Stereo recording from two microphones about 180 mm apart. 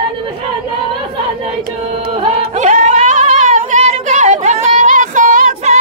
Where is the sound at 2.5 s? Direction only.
40° right (ahead or behind).